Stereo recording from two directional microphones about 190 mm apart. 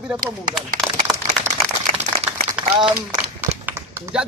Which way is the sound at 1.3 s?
35° right (ahead or behind).